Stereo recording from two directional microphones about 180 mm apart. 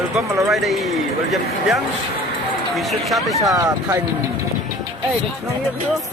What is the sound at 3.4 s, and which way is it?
Speech, 20° right (ahead or behind).